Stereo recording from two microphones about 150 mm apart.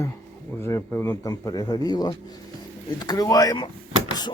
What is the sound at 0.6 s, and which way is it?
Speech, 15° left (ahead or behind).